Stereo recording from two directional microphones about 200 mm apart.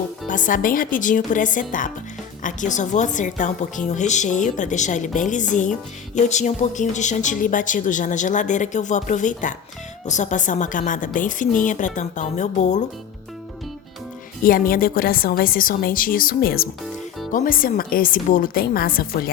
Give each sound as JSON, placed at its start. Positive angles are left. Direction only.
{"t": 0.3, "sound": "a woman's voice", "side_deg": 40}
{"t": 14.4, "sound": "a woman's voice", "side_deg": 45}